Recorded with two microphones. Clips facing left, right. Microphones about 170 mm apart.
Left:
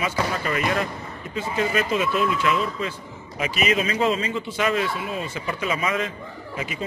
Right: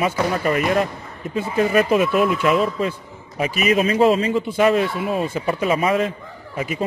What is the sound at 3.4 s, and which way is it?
Speech, 35° right (ahead or behind).